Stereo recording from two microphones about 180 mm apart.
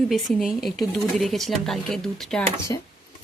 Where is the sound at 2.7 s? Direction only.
20° left (ahead or behind).